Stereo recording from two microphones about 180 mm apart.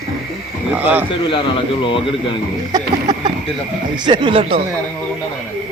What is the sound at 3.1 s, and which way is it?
Speech, 20° right (ahead or behind).